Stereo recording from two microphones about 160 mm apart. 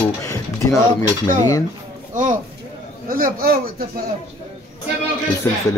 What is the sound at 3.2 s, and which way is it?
Speech, 65° right (ahead or behind).